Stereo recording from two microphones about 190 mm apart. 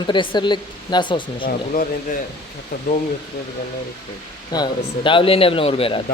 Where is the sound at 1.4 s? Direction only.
45° left (ahead or behind).